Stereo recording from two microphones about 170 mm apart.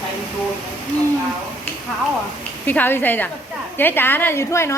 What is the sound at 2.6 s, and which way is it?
A woman's voice, 10° left (ahead or behind).